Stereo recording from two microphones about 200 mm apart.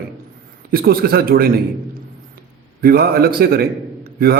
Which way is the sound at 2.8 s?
50° right (ahead or behind).